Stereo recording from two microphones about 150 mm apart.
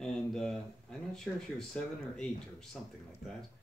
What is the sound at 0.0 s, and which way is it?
Speech, 5° left (ahead or behind).